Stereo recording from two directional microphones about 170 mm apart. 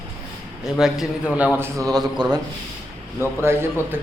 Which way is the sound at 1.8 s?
20° right (ahead or behind).